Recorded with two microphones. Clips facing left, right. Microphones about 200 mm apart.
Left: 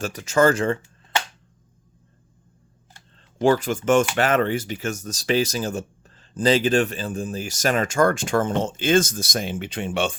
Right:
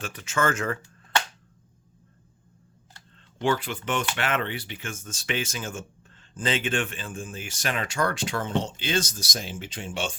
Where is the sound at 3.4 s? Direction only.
45° left (ahead or behind).